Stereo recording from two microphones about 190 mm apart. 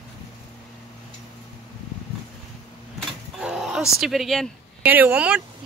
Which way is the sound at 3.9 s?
Centre (ahead or behind).